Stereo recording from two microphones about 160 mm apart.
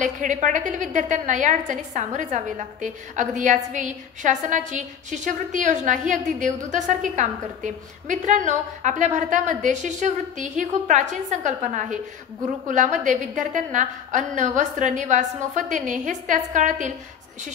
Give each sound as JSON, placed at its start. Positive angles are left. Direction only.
{"t": 0.0, "sound": "a woman's voice", "side_deg": -50}